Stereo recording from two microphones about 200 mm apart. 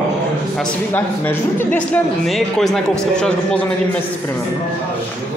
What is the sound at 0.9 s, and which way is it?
Speech, 10° left (ahead or behind).